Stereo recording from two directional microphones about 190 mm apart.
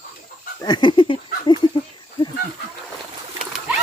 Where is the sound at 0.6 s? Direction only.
25° left (ahead or behind).